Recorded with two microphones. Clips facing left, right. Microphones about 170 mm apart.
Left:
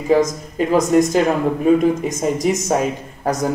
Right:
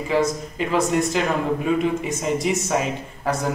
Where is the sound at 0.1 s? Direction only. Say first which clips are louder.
Left 6 dB; 45° left (ahead or behind).